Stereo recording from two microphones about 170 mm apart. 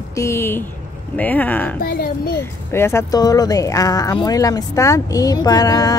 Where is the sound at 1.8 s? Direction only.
60° left (ahead or behind).